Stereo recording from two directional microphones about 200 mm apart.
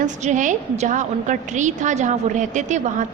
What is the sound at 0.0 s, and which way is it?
A woman's voice, 35° right (ahead or behind).